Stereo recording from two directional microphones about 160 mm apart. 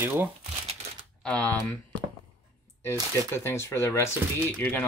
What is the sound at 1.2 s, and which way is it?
Speech, 5° left (ahead or behind).